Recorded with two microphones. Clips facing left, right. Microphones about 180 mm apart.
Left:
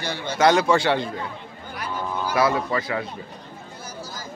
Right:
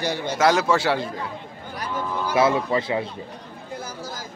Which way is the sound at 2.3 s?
25° right (ahead or behind).